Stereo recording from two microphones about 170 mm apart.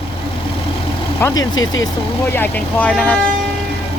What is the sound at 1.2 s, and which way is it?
Speech, 15° left (ahead or behind).